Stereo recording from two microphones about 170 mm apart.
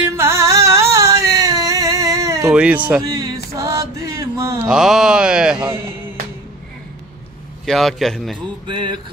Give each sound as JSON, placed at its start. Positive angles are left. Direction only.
{"t": 0.0, "sound": "music", "side_deg": -15}
{"t": 2.4, "sound": "speech", "side_deg": -5}
{"t": 3.0, "sound": "a sound", "side_deg": -20}
{"t": 3.5, "sound": "mantra", "side_deg": -20}
{"t": 4.6, "sound": "speech", "side_deg": -5}
{"t": 7.6, "sound": "a man's voice", "side_deg": 0}
{"t": 8.6, "sound": "music", "side_deg": -30}